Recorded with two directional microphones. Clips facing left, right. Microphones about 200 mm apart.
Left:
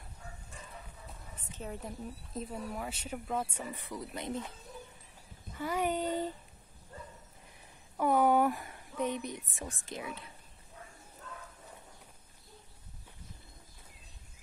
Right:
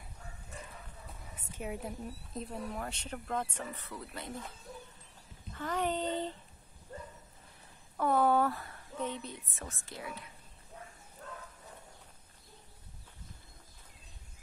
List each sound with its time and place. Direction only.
1.3 s a woman's voice: 10° right (ahead or behind); by 4.5 s 20° left (ahead or behind)
5.6 s a woman's voice: 10° left (ahead or behind)
8.0 s a sound: 15° left (ahead or behind)
9.5 s a woman's voice: 15° left (ahead or behind)